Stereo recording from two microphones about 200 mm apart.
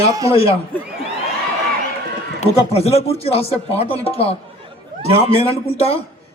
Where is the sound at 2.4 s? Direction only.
30° left (ahead or behind).